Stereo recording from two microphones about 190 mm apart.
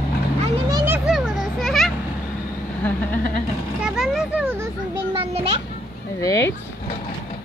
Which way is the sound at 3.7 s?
5° right (ahead or behind).